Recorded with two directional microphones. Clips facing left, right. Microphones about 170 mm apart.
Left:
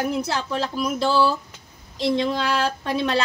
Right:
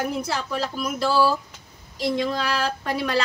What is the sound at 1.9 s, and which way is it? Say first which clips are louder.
Speech: left 2 dB; 25° left (ahead or behind).